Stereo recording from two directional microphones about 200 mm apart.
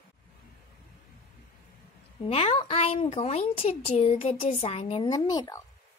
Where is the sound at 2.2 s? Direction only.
30° left (ahead or behind).